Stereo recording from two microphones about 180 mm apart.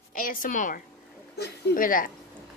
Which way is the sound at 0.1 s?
50° left (ahead or behind).